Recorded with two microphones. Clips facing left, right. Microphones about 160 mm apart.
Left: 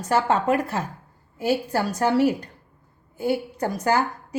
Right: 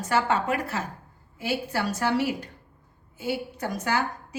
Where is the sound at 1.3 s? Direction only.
40° left (ahead or behind).